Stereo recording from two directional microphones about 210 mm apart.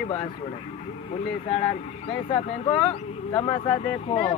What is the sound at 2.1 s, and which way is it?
Speech, 25° left (ahead or behind).